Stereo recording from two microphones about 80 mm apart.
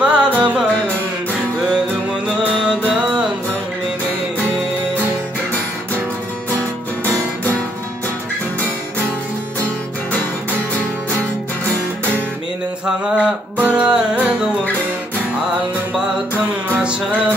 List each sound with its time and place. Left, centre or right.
0.0 s music: centre
13.6 s music: centre
16.6 s music: right